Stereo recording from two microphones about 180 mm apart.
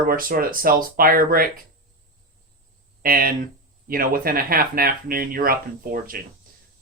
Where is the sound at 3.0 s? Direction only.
55° right (ahead or behind).